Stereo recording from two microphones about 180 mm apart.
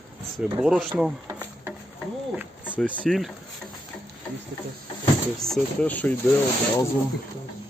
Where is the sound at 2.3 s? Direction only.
5° right (ahead or behind).